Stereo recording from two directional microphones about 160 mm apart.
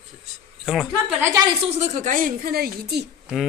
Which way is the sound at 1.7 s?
45° right (ahead or behind).